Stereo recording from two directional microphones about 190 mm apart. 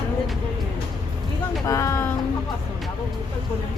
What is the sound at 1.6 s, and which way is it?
Music, 15° left (ahead or behind).